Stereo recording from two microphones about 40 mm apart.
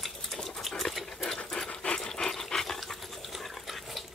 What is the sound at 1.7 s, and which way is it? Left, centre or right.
Dog, left.